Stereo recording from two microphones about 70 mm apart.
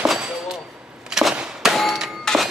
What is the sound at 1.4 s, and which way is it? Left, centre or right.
Clang, centre.